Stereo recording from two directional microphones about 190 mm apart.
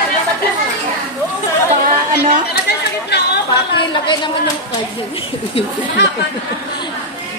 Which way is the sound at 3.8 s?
25° left (ahead or behind).